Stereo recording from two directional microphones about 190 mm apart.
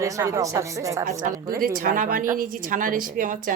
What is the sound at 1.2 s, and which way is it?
A woman's voice, 50° right (ahead or behind).